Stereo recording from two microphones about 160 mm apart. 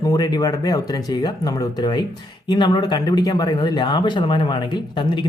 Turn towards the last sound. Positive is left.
turn(degrees=30)  # may be behind; listen again after turning